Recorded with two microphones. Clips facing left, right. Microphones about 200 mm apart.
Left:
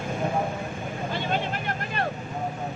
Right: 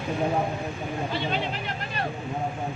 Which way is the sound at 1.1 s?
50° left (ahead or behind).